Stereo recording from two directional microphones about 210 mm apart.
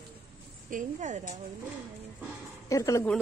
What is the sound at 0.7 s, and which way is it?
Speech, 35° right (ahead or behind).